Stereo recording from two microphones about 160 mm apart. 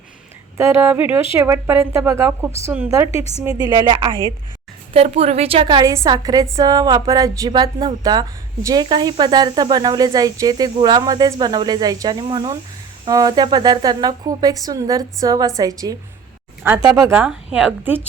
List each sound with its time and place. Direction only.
0.5 s speech: 15° right (ahead or behind)
3.1 s a woman's voice: 40° left (ahead or behind)
3.7 s a woman's voice: 25° right (ahead or behind)
4.9 s a woman's voice: 40° right (ahead or behind); by 16.0 s 20° right (ahead or behind)
16.6 s speech: 10° right (ahead or behind)